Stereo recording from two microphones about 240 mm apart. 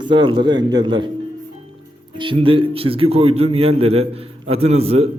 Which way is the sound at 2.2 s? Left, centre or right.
Right.